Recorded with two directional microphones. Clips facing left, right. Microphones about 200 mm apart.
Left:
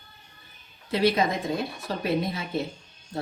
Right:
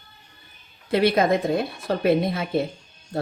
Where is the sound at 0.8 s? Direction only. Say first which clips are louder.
Right 4 dB; 60° right (ahead or behind).